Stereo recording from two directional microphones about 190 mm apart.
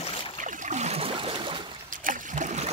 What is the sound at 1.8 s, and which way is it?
Boat, 45° right (ahead or behind).